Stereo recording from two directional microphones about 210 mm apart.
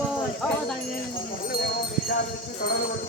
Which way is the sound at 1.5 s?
45° left (ahead or behind).